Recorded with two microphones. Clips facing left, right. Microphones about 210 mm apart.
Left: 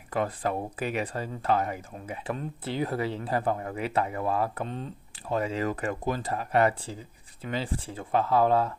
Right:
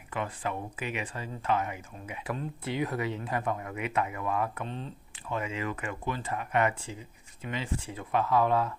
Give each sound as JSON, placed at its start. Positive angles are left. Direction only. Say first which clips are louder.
{"t": 0.1, "sound": "speech", "louder": "left 5 dB", "side_deg": 40}